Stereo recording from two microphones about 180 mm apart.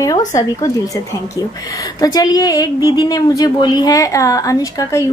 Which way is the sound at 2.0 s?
20° left (ahead or behind).